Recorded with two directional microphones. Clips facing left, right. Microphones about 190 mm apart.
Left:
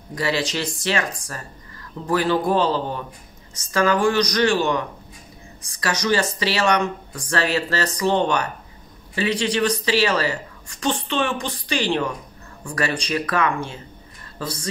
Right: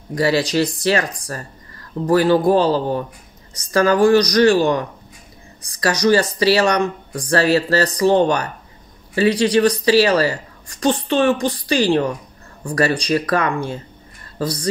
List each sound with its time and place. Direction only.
0.1 s a woman's voice: 40° right (ahead or behind)